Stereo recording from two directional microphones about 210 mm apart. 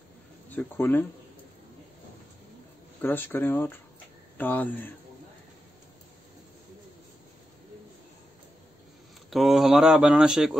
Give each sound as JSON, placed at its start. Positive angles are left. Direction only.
{"t": 0.5, "sound": "speech", "side_deg": 10}
{"t": 3.0, "sound": "speech", "side_deg": 10}
{"t": 9.3, "sound": "speech", "side_deg": 0}